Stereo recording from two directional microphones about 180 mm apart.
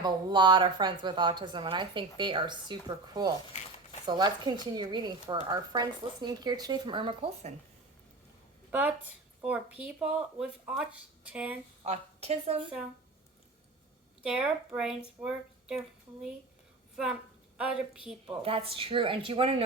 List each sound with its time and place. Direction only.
0.0 s a woman's voice: 25° right (ahead or behind)
9.4 s speech: 5° right (ahead or behind)
11.8 s a woman's voice: 35° right (ahead or behind)
14.2 s a woman's voice: 5° right (ahead or behind)
16.9 s a woman's voice: 5° right (ahead or behind)
18.4 s speech: 30° right (ahead or behind)